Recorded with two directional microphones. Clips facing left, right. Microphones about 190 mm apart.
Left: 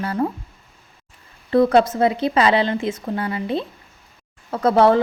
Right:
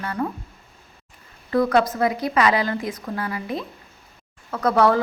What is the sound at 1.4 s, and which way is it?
A woman's voice, 30° left (ahead or behind).